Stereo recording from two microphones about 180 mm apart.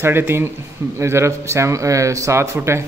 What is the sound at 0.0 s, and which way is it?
Speech, 10° right (ahead or behind).